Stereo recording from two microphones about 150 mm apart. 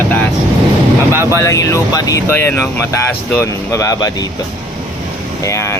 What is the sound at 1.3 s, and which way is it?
Speech, 20° left (ahead or behind).